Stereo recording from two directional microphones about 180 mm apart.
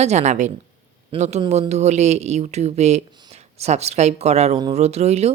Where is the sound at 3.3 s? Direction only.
35° right (ahead or behind).